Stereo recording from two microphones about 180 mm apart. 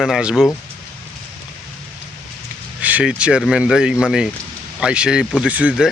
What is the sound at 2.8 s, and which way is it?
Speech, 5° right (ahead or behind).